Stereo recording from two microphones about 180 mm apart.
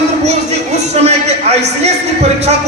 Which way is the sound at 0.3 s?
35° right (ahead or behind).